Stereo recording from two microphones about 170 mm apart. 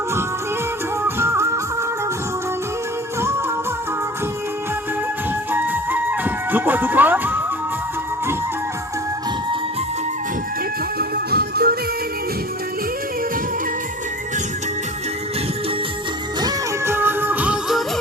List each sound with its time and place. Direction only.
1.0 s music: 15° right (ahead or behind)
3.2 s music: 15° right (ahead or behind)
5.5 s music: 10° right (ahead or behind)
10.9 s music: 65° right (ahead or behind)
16.4 s music: 20° right (ahead or behind); by 18.0 s centre (ahead or behind)